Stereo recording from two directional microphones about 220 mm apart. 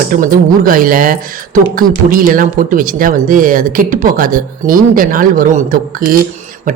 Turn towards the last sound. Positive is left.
turn(degrees=-40)  # may be behind; listen again after turning